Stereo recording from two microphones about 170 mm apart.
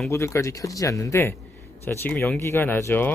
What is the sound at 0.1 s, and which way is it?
Speech, 15° left (ahead or behind).